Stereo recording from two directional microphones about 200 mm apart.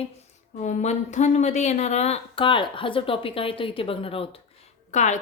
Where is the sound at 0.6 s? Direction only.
35° left (ahead or behind).